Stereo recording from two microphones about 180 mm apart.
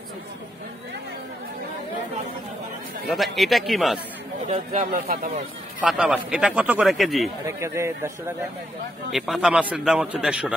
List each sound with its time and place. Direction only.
3.1 s speech: centre (ahead or behind)
4.5 s speech: 45° right (ahead or behind)
5.8 s speech: 5° right (ahead or behind)
7.4 s a man's voice: 15° right (ahead or behind)
9.1 s speech: centre (ahead or behind)